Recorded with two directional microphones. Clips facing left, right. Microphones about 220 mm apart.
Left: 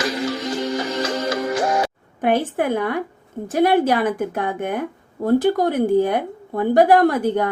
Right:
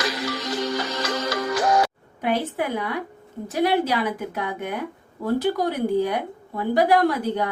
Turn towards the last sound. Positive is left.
turn(degrees=50)  # may be behind; listen again after turning